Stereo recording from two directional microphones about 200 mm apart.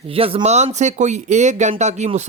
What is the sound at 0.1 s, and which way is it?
Speech, 30° right (ahead or behind).